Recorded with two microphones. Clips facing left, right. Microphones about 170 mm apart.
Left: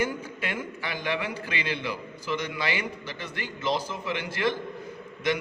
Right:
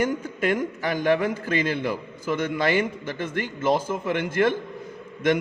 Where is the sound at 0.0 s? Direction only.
45° right (ahead or behind).